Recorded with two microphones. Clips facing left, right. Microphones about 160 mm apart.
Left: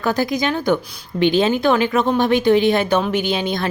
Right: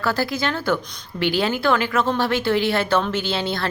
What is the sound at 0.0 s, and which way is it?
Speech, 20° left (ahead or behind).